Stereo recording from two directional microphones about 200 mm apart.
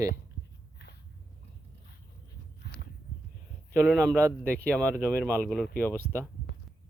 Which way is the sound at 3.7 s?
5° left (ahead or behind).